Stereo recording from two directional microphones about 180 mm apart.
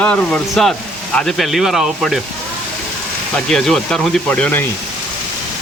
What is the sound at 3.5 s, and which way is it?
Speech, 5° left (ahead or behind).